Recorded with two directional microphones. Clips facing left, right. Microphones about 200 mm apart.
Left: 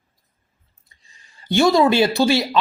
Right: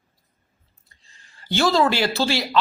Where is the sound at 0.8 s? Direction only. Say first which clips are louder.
Left 1 dB; 20° left (ahead or behind).